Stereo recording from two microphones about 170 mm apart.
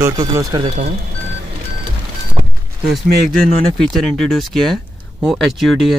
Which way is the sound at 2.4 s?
35° right (ahead or behind).